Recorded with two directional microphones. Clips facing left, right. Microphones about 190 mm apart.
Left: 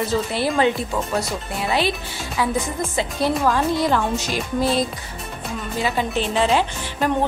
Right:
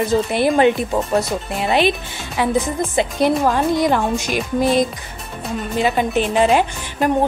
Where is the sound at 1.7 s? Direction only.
20° right (ahead or behind).